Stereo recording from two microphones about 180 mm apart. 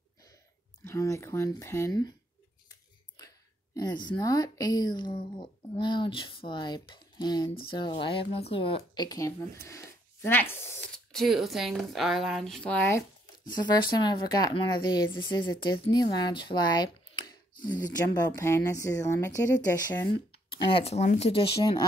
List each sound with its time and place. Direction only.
0.8 s speech: 15° left (ahead or behind)
3.2 s a woman's voice: 20° left (ahead or behind)
13.5 s speech: 25° left (ahead or behind)